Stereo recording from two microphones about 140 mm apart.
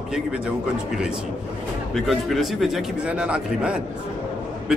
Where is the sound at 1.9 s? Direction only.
Centre (ahead or behind).